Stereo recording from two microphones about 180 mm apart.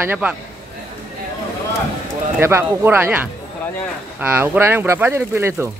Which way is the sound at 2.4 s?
15° right (ahead or behind).